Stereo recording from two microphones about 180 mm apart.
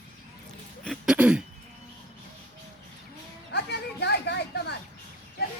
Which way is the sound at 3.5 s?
65° left (ahead or behind).